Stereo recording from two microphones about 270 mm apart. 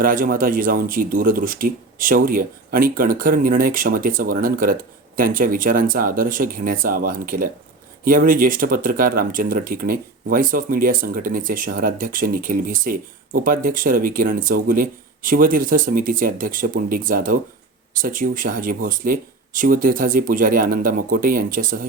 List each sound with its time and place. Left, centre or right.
0.0 s speech: right